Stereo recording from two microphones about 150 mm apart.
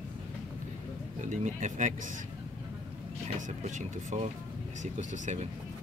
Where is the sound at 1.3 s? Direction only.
55° right (ahead or behind).